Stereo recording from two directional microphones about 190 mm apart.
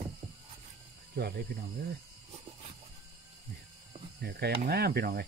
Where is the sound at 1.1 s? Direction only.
55° right (ahead or behind).